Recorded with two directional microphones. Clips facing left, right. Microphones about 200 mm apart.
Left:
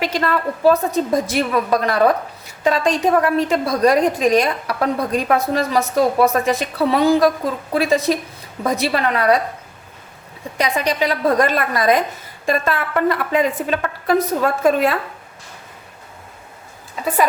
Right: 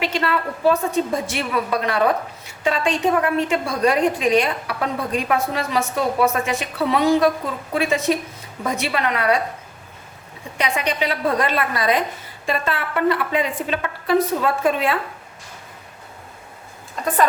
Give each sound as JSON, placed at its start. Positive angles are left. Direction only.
{"t": 0.0, "sound": "a woman's voice", "side_deg": 40}
{"t": 10.6, "sound": "a woman's voice", "side_deg": 40}
{"t": 16.9, "sound": "speech", "side_deg": 5}